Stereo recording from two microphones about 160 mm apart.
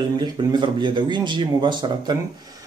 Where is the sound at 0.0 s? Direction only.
25° right (ahead or behind).